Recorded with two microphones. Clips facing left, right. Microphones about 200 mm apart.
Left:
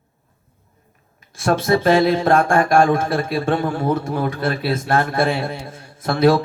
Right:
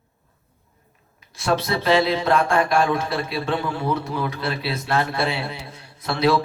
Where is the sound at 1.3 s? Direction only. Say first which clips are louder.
Left 5 dB; 50° left (ahead or behind).